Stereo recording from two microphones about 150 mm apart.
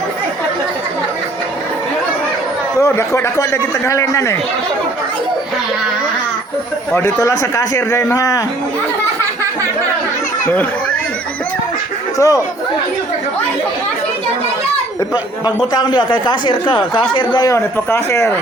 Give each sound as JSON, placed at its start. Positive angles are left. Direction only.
{"t": 2.8, "sound": "a man's voice", "side_deg": 20}
{"t": 6.9, "sound": "a man's voice", "side_deg": 20}
{"t": 12.1, "sound": "speech", "side_deg": 25}
{"t": 15.4, "sound": "a man's voice", "side_deg": 30}
{"t": 17.7, "sound": "speech", "side_deg": 15}